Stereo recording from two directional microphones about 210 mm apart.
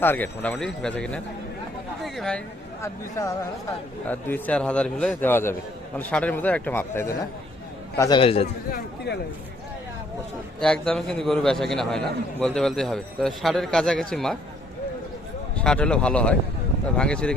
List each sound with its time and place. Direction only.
0.0 s a man's voice: 10° left (ahead or behind)
2.8 s a man's voice: 15° left (ahead or behind)
9.1 s speech: 50° left (ahead or behind)
10.6 s a man's voice: 5° left (ahead or behind)
15.5 s a man's voice: 5° left (ahead or behind)